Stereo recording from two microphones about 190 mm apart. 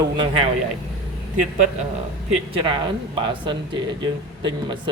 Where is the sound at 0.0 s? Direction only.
25° right (ahead or behind).